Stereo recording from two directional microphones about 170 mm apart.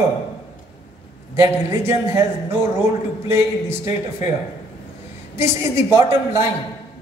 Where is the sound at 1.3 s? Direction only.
15° right (ahead or behind).